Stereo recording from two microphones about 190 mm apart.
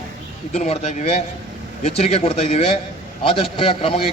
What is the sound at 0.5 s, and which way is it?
A man's voice, 40° left (ahead or behind).